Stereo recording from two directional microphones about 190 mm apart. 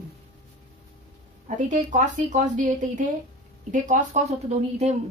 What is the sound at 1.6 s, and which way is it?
Speech, 40° right (ahead or behind).